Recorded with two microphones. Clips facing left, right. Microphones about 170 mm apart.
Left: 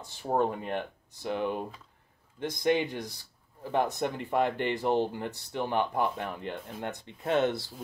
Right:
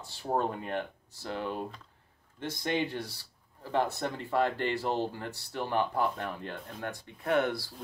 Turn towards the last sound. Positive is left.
turn(degrees=20)  # may be behind; listen again after turning